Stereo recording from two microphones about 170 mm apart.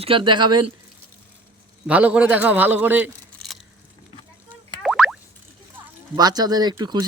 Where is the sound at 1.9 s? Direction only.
10° right (ahead or behind).